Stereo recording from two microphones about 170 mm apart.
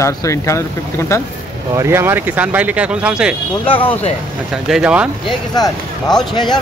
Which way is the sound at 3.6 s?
30° left (ahead or behind).